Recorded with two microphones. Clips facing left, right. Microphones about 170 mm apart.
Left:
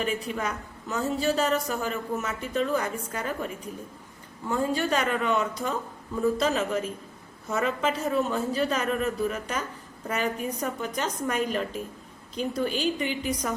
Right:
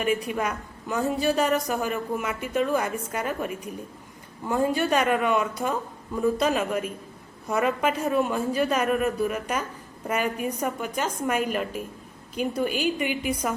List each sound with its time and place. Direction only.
0.0 s a woman's voice: 10° right (ahead or behind)